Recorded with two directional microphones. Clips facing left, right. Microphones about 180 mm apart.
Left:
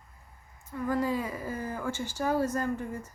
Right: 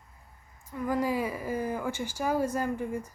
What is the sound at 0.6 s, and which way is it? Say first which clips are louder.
A woman's voice: even; 10° right (ahead or behind).